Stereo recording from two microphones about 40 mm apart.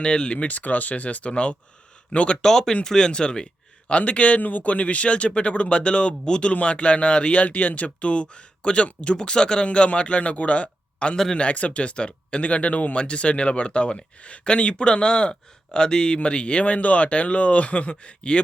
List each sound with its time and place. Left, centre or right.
0.0 s speech: left
0.4 s speech: left
2.4 s speech: centre; by 9.1 s left
9.1 s speech: centre